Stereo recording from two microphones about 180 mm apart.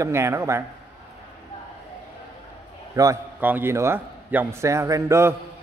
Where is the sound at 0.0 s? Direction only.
15° right (ahead or behind).